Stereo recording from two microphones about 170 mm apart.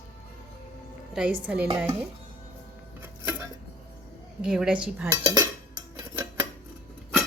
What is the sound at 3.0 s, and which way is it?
Music, 10° right (ahead or behind).